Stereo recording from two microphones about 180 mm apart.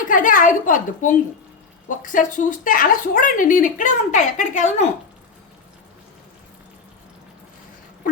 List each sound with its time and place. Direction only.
0.1 s a woman's voice: 50° left (ahead or behind)